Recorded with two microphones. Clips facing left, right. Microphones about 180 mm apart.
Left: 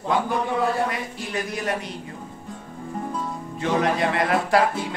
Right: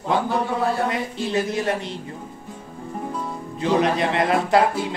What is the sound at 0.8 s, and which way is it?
Speech, 25° right (ahead or behind).